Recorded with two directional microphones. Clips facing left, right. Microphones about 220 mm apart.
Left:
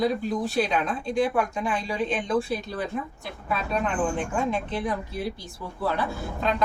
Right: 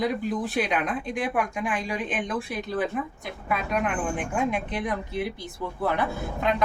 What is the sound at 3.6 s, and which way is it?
Speech, 15° right (ahead or behind).